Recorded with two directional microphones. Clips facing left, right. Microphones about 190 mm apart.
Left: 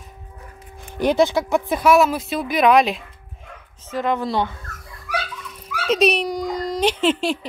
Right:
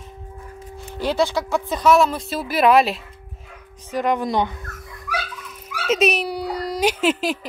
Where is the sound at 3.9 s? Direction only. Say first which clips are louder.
Right 1 dB; 15° right (ahead or behind).